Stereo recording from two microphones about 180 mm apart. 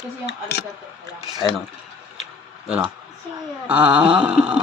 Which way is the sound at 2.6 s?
5° right (ahead or behind).